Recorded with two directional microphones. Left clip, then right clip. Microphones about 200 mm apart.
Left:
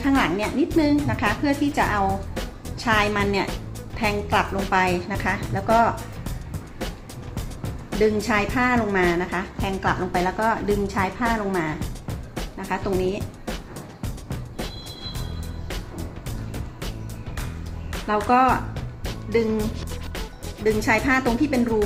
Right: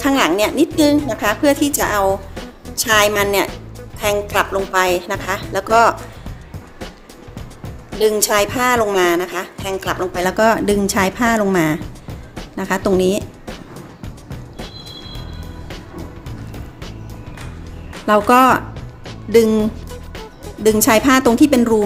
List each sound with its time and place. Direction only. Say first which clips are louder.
0.0 s a woman's voice: right 7 dB; 70° right (ahead or behind)
2.3 s music: right 1 dB; centre (ahead or behind)
2.7 s a woman's voice: right 7 dB; 70° right (ahead or behind)
7.3 s music: left 1 dB; centre (ahead or behind)
8.0 s a woman's voice: right 7 dB; 70° right (ahead or behind)
11.8 s music: right 2 dB; centre (ahead or behind)
12.5 s a woman's voice: right 9 dB; 70° right (ahead or behind)
14.0 s music: right 1 dB; centre (ahead or behind)
18.0 s a woman's voice: right 7 dB; 70° right (ahead or behind)
19.9 s music: right 2 dB; centre (ahead or behind)
20.7 s a woman's voice: right 8 dB; 70° right (ahead or behind)